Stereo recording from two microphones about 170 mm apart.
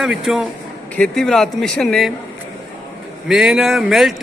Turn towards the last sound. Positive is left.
turn(degrees=0)  # may be behind; listen again after turning